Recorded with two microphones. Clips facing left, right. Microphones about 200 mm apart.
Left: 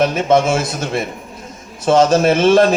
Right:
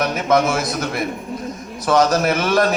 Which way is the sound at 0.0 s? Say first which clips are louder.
Left 3 dB; 25° left (ahead or behind).